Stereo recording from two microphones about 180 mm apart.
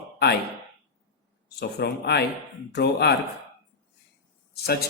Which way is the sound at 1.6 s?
65° left (ahead or behind).